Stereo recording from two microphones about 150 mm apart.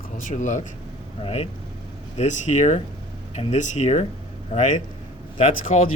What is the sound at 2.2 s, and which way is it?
Speech, 50° left (ahead or behind).